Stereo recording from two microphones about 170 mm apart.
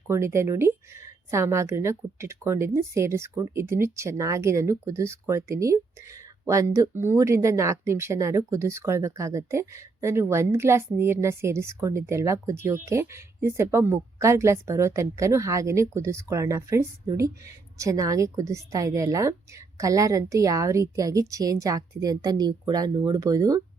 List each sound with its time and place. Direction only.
0.1 s a woman's voice: 15° right (ahead or behind)